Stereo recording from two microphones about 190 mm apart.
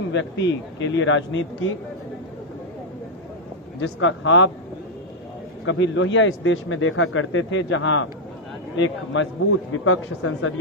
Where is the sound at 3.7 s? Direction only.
90° left.